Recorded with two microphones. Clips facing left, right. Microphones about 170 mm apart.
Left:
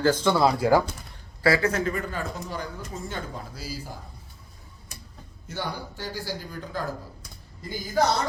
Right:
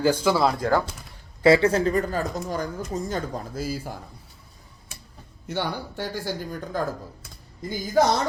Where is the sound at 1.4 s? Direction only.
25° right (ahead or behind); by 3.8 s 50° right (ahead or behind).